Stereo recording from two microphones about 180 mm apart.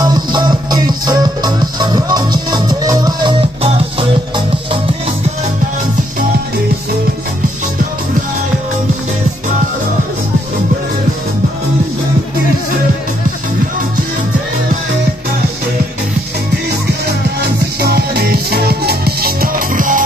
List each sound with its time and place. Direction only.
0.0 s music: 25° right (ahead or behind)
17.7 s music: 60° right (ahead or behind)